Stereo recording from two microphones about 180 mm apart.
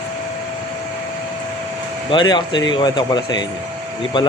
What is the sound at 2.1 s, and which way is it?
Speech, 25° left (ahead or behind).